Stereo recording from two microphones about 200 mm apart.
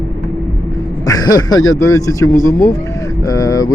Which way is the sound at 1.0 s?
20° left (ahead or behind).